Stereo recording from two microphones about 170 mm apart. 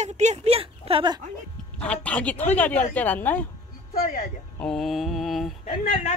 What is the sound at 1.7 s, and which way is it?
A woman's voice, 5° left (ahead or behind).